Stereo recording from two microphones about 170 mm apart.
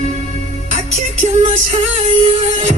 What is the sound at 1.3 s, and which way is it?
Music, 40° right (ahead or behind).